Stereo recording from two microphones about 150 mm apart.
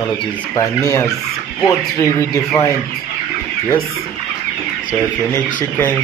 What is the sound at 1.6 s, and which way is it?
Speech, 20° left (ahead or behind).